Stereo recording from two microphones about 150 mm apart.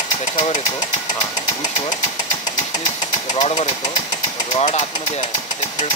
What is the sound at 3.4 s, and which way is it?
Speech, 45° left (ahead or behind).